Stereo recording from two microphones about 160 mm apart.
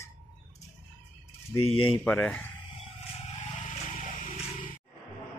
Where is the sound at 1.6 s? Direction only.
35° left (ahead or behind).